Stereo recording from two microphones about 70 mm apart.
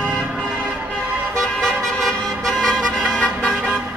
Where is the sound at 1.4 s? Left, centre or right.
Centre.